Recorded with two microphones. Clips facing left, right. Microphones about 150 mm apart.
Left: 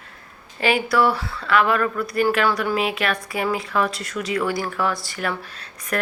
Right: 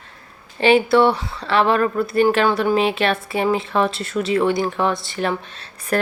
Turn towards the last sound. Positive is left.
turn(degrees=-30)  # may be behind; listen again after turning